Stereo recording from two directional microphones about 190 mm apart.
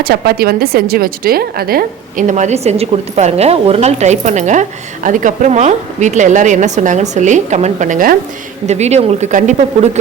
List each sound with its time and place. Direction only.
0.0 s a woman's voice: 55° right (ahead or behind); by 10.0 s 35° right (ahead or behind)